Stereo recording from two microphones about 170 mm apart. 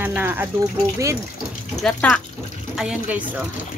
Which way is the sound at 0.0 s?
10° right (ahead or behind).